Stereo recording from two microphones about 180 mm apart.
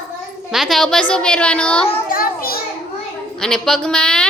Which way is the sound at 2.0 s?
55° left (ahead or behind).